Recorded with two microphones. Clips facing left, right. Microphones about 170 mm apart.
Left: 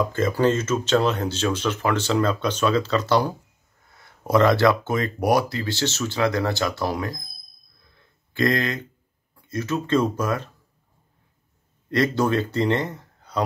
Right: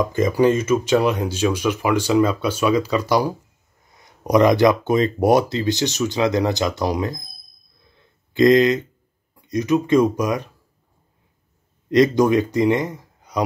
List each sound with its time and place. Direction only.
0.0 s speech: 15° right (ahead or behind)
8.3 s speech: 20° right (ahead or behind)
11.9 s speech: 15° right (ahead or behind)